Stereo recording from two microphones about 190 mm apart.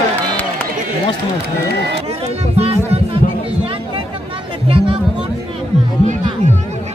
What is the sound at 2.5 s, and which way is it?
Music, 35° right (ahead or behind).